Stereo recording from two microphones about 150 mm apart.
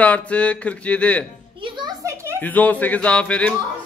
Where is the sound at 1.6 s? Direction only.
30° right (ahead or behind).